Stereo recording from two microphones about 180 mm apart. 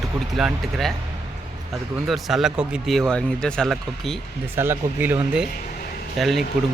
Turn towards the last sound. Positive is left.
turn(degrees=0)  # may be behind; listen again after turning